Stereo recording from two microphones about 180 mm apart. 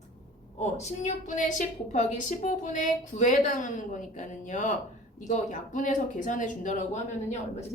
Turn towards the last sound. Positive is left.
turn(degrees=40)  # may be behind; listen again after turning